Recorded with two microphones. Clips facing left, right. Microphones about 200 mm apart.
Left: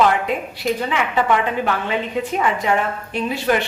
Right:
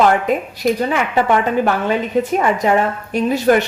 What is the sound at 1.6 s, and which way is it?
A woman's voice, 45° right (ahead or behind).